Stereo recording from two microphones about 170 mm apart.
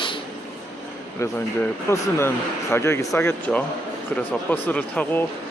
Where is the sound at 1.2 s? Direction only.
15° left (ahead or behind).